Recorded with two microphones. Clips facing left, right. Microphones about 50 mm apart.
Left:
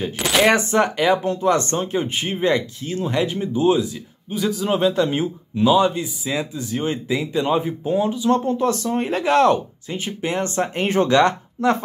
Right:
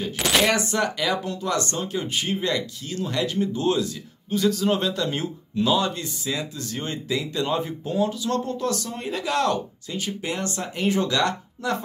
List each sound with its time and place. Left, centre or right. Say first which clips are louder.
0.5 s speech: left 6 dB; left